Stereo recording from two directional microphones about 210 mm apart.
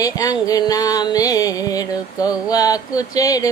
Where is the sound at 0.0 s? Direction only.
15° left (ahead or behind).